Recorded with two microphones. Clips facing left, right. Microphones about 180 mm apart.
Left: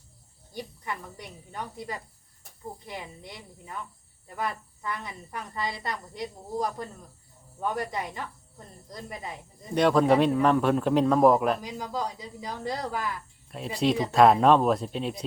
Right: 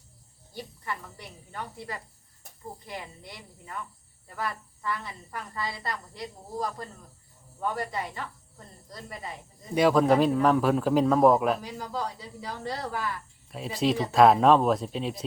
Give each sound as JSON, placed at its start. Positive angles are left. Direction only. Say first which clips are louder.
{"t": 0.5, "sound": "speech", "louder": "left 1 dB", "side_deg": 15}
{"t": 9.7, "sound": "a man's voice", "louder": "even", "side_deg": -5}
{"t": 11.6, "sound": "speech", "louder": "left 1 dB", "side_deg": 15}
{"t": 13.5, "sound": "a man's voice", "louder": "left 1 dB", "side_deg": 0}